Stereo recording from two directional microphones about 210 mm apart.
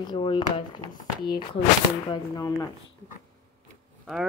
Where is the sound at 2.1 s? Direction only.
15° left (ahead or behind).